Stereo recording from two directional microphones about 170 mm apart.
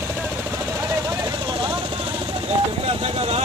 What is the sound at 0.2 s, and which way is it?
Vehicle, 15° right (ahead or behind).